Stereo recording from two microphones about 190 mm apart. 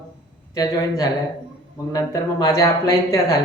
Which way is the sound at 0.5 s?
20° left (ahead or behind).